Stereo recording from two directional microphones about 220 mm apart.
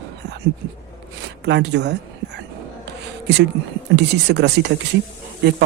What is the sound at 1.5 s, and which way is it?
Speech, 50° right (ahead or behind).